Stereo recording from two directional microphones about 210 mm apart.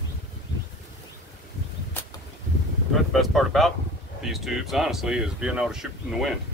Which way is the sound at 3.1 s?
Centre (ahead or behind).